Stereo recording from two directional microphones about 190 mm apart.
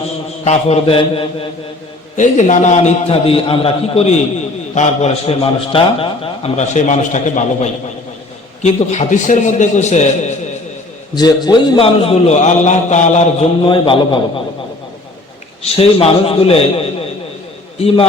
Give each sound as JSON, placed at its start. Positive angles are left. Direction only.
{"t": 0.4, "sound": "a man's voice", "side_deg": 35}
{"t": 2.1, "sound": "a man's voice", "side_deg": 40}
{"t": 11.1, "sound": "a man's voice", "side_deg": 20}
{"t": 13.7, "sound": "a man's voice", "side_deg": 25}
{"t": 15.6, "sound": "a man's voice", "side_deg": 30}